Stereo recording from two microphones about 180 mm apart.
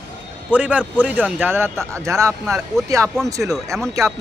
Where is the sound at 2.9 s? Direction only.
20° right (ahead or behind).